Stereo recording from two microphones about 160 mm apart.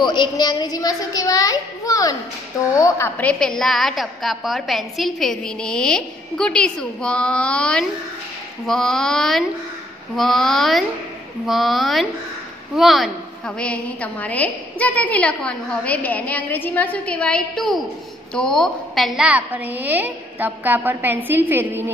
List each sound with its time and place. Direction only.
0.0 s a child's voice: 25° left (ahead or behind); by 21.9 s 15° right (ahead or behind)